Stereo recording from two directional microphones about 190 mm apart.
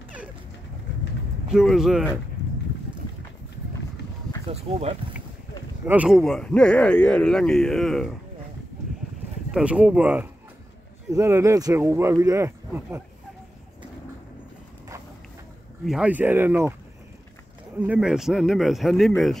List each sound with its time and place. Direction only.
1.5 s speech: centre (ahead or behind)
4.5 s speech: 30° right (ahead or behind)
5.9 s speech: 5° right (ahead or behind)
9.5 s speech: 5° right (ahead or behind)
15.8 s speech: 5° right (ahead or behind)
17.7 s speech: 5° right (ahead or behind)